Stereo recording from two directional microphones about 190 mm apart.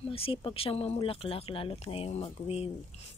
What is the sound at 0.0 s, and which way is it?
Speech, 30° left (ahead or behind).